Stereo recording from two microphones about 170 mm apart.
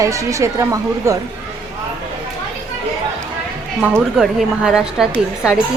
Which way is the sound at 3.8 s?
5° right (ahead or behind).